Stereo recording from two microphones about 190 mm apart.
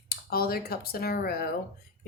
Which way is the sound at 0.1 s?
55° left (ahead or behind).